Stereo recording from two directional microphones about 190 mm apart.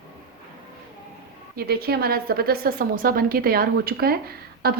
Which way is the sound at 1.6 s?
55° right (ahead or behind).